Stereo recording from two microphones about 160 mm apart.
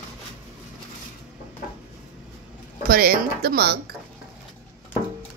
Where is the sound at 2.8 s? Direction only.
70° right (ahead or behind).